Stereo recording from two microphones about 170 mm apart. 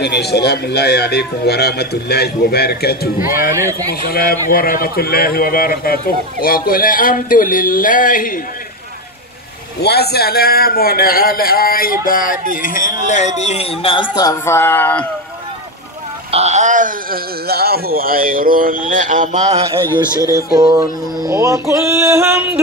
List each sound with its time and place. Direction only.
0.0 s a man's voice: 75° left (ahead or behind)
3.2 s music: 15° right (ahead or behind)
4.0 s a man's voice: 65° left (ahead or behind)
9.8 s a man's voice: 75° left (ahead or behind); by 15.0 s 10° left (ahead or behind)
16.3 s speech: 40° right (ahead or behind)
19.9 s speech: 20° left (ahead or behind)
20.5 s music: 20° right (ahead or behind)